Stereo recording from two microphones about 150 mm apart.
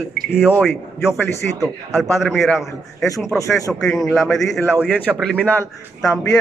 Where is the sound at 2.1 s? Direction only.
Centre (ahead or behind).